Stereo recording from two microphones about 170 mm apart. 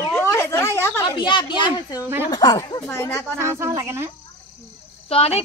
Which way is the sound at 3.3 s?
15° right (ahead or behind).